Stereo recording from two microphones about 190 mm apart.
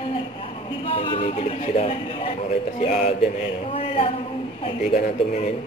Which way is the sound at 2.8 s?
35° left (ahead or behind).